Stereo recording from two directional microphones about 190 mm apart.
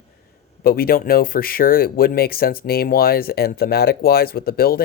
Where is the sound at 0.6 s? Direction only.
50° left (ahead or behind).